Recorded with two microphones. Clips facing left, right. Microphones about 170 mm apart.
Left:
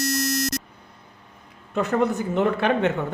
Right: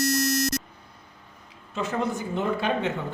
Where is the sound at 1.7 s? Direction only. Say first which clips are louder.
Left 6 dB; 60° left (ahead or behind).